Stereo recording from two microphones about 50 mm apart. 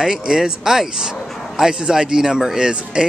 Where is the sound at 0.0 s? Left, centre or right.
Centre.